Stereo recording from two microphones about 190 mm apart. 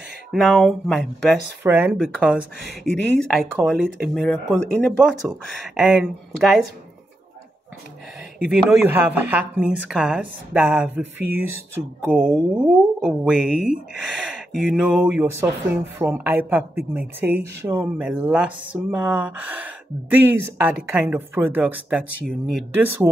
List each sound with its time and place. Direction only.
0.3 s speech: centre (ahead or behind)
8.4 s a woman's voice: 10° right (ahead or behind)